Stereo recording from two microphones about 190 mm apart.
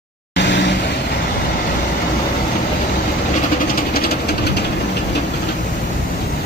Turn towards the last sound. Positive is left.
turn(degrees=60)  # may be behind; listen again after turning